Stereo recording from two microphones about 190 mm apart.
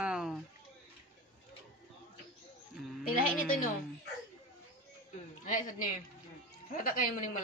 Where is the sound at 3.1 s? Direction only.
50° left (ahead or behind).